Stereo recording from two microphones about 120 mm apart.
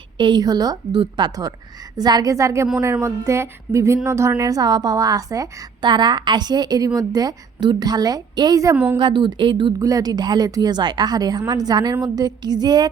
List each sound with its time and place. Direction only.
0.2 s a woman's voice: 40° right (ahead or behind)
8.7 s a woman's voice: 10° right (ahead or behind)
9.0 s speech: 40° right (ahead or behind)
9.8 s speech: 30° right (ahead or behind)